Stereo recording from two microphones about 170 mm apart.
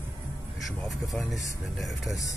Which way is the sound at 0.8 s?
Centre (ahead or behind).